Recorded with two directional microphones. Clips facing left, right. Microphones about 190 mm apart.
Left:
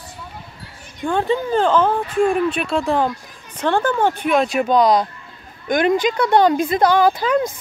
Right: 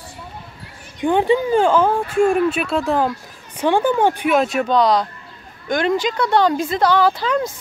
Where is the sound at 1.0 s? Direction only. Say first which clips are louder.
Right 3 dB; 15° right (ahead or behind).